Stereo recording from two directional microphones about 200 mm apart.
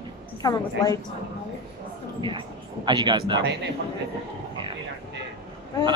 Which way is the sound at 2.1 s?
25° right (ahead or behind).